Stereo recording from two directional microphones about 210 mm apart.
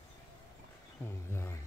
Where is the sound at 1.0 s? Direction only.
10° left (ahead or behind).